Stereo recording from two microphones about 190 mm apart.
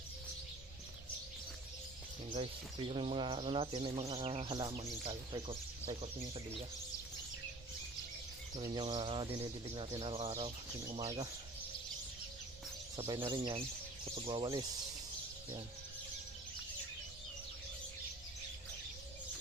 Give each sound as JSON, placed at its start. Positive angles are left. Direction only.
{"t": 2.7, "sound": "speech", "side_deg": -30}
{"t": 8.5, "sound": "speech", "side_deg": -25}
{"t": 13.0, "sound": "speech", "side_deg": -25}